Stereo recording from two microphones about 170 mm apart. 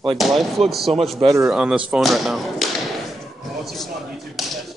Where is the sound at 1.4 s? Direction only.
5° right (ahead or behind).